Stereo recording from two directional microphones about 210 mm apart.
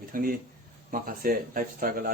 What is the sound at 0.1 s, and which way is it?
Speech, 40° right (ahead or behind).